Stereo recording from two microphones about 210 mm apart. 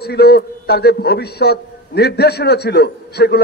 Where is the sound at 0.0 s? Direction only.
50° left (ahead or behind).